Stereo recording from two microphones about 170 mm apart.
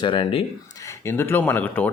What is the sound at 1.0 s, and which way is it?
Speech, 15° left (ahead or behind).